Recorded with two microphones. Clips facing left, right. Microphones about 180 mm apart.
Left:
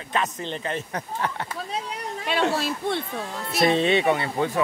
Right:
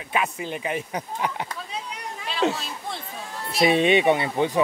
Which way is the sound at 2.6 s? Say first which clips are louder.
Left 8 dB; 65° left (ahead or behind).